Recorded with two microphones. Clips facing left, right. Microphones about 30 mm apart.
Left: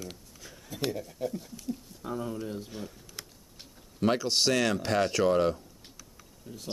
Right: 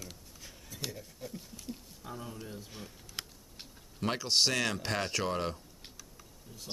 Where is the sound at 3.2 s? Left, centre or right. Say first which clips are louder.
Right 3 dB; right.